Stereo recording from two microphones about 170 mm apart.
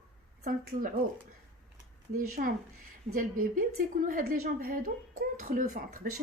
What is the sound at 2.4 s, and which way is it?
A woman's voice, 55° right (ahead or behind).